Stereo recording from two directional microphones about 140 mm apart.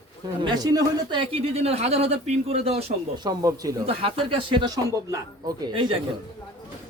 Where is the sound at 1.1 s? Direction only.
45° right (ahead or behind).